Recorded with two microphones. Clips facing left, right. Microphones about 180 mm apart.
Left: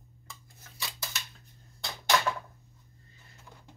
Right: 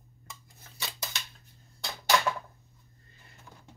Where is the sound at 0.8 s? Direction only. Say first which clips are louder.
Right 1 dB; 20° right (ahead or behind).